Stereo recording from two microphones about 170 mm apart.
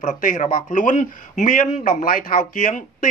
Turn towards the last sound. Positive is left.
turn(degrees=50)  # may be behind; listen again after turning